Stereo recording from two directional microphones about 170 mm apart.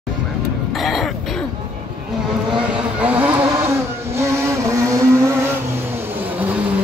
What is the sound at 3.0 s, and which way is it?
Vehicle, 10° right (ahead or behind).